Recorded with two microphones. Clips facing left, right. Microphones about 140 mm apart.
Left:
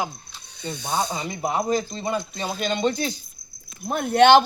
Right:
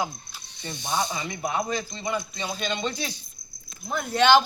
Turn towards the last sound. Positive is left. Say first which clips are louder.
# left 5 dB
turn(degrees=55)  # may be behind; listen again after turning